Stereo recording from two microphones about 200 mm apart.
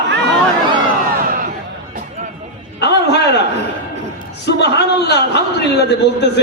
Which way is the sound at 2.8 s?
55° left (ahead or behind).